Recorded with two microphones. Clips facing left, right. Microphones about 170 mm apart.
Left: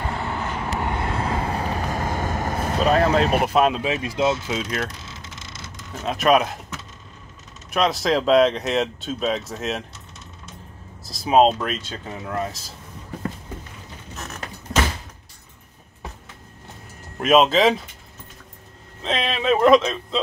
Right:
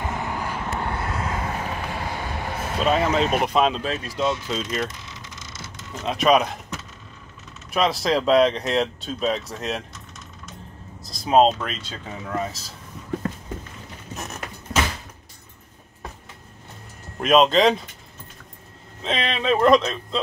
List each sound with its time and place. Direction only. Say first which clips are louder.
0.0 s vehicle: left 1 dB; 15° right (ahead or behind)
0.7 s vehicle: left 4 dB; 20° left (ahead or behind); by 2.9 s 45° left (ahead or behind)
2.9 s speech: left 2 dB; centre (ahead or behind); by 4.4 s 20° left (ahead or behind)
4.5 s speech: even; 5° left (ahead or behind)
5.5 s mechanisms: even; 50° left (ahead or behind)
6.0 s speech: even; centre (ahead or behind)
7.7 s speech: left 1 dB; centre (ahead or behind)
11.1 s speech: left 1 dB; 5° left (ahead or behind)
17.2 s speech: even; centre (ahead or behind)
19.0 s speech: left 1 dB; centre (ahead or behind)